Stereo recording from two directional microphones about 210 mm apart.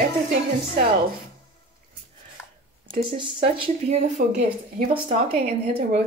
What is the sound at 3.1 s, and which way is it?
Speech, 30° right (ahead or behind).